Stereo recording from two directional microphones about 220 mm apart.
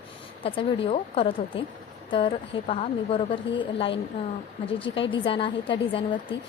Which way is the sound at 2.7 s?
25° left (ahead or behind).